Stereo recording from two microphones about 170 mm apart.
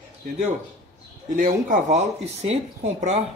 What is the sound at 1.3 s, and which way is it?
Speech, 45° right (ahead or behind).